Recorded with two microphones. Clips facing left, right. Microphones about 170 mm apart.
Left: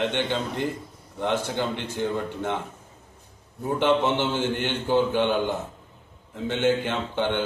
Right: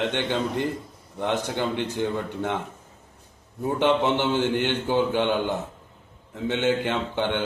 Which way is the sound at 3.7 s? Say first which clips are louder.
Even; 15° right (ahead or behind).